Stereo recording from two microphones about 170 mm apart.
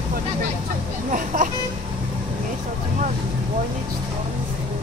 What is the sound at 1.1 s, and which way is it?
Speech, 50° right (ahead or behind).